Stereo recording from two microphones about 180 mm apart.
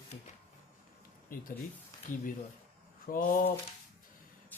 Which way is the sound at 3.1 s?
50° left (ahead or behind).